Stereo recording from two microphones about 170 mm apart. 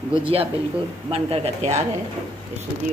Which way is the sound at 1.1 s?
35° right (ahead or behind).